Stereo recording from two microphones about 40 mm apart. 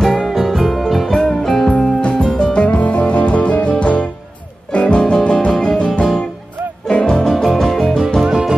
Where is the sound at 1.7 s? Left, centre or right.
Left.